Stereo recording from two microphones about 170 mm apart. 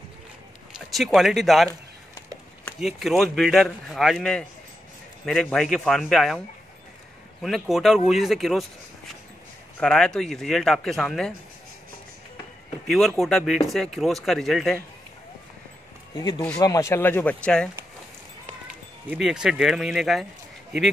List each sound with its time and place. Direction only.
0.7 s speech: centre (ahead or behind)
2.8 s a man's voice: centre (ahead or behind)
7.4 s a man's voice: centre (ahead or behind)
9.8 s a man's voice: 5° left (ahead or behind)
12.8 s a man's voice: centre (ahead or behind)
16.2 s speech: 25° left (ahead or behind); by 17.6 s 5° left (ahead or behind)
19.0 s a man's voice: 5° right (ahead or behind)